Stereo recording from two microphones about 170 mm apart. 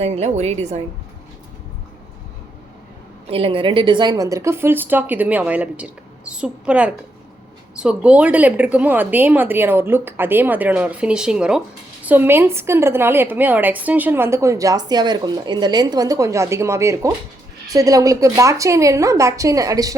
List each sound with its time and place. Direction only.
0.0 s a woman's voice: 40° right (ahead or behind)
3.2 s a woman's voice: 35° right (ahead or behind)